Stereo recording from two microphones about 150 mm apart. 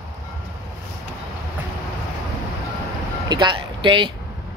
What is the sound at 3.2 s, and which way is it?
Speech, 30° right (ahead or behind).